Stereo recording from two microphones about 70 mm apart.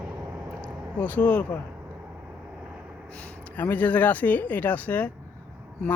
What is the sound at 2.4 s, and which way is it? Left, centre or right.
Vehicle, centre.